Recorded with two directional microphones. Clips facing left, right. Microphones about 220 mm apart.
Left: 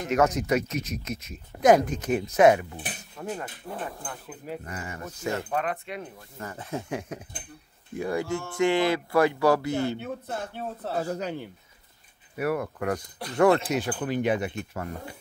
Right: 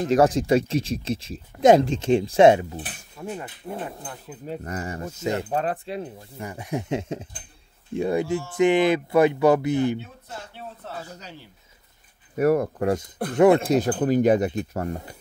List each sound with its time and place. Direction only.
0.0 s speech: 30° right (ahead or behind)
3.2 s speech: 10° right (ahead or behind)
4.6 s speech: 40° right (ahead or behind); by 5.6 s 20° right (ahead or behind)
5.6 s speech: 30° right (ahead or behind)
6.3 s speech: 15° right (ahead or behind)
9.9 s speech: 60° left (ahead or behind)
10.8 s speech: 35° left (ahead or behind)
11.1 s speech: 55° left (ahead or behind)
12.4 s speech: 40° right (ahead or behind)
13.7 s speech: 40° right (ahead or behind)